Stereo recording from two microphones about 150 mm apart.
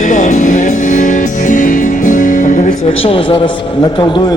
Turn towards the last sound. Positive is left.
turn(degrees=35)  # may be behind; listen again after turning